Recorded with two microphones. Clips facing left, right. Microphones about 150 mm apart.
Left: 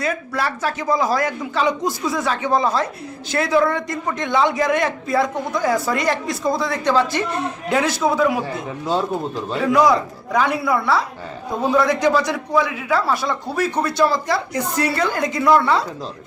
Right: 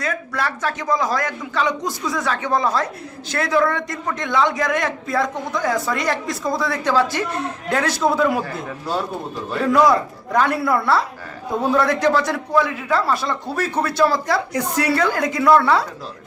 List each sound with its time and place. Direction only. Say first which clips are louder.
0.0 s speech: left 2 dB; 5° left (ahead or behind)
9.6 s a woman's voice: even; centre (ahead or behind)
15.4 s speech: right 1 dB; 10° left (ahead or behind)